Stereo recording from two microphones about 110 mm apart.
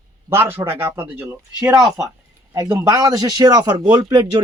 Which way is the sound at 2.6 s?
30° right (ahead or behind).